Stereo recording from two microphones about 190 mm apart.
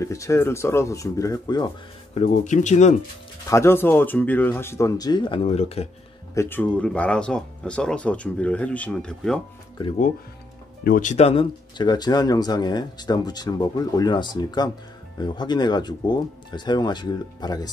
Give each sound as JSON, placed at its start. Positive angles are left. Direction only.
{"t": 0.0, "sound": "speech", "side_deg": 15}
{"t": 2.1, "sound": "speech", "side_deg": 40}
{"t": 3.4, "sound": "speech", "side_deg": 15}
{"t": 6.3, "sound": "speech", "side_deg": 10}
{"t": 10.8, "sound": "speech", "side_deg": 45}